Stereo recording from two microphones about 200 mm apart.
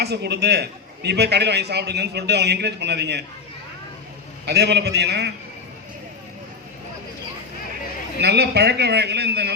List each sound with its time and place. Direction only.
0.0 s a man's voice: 55° right (ahead or behind)
4.4 s a man's voice: 55° right (ahead or behind)
8.2 s a man's voice: 55° right (ahead or behind)